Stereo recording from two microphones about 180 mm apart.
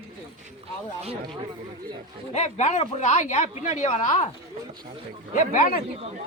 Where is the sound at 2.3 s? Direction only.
40° left (ahead or behind).